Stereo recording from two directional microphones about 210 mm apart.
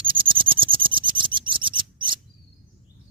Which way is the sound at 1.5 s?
25° right (ahead or behind).